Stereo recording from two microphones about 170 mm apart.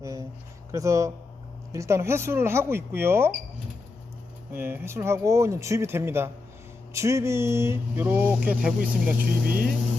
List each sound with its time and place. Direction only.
0.0 s a sound: 20° right (ahead or behind)
0.7 s speech: 20° right (ahead or behind)
4.5 s speech: 15° right (ahead or behind)